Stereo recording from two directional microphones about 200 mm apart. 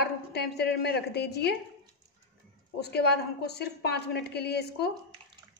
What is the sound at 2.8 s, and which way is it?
A woman's voice, 55° left (ahead or behind).